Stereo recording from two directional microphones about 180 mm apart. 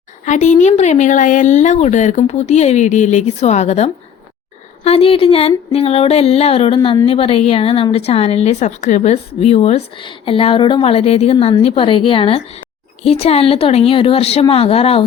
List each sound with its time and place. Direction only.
0.3 s speech: 40° left (ahead or behind)